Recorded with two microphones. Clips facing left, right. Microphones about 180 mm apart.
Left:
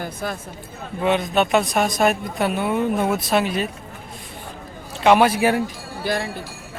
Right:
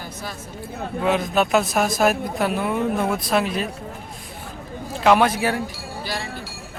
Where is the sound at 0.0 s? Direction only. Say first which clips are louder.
Left 6 dB; 55° left (ahead or behind).